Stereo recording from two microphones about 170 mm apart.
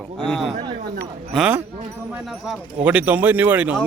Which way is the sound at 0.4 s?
30° right (ahead or behind).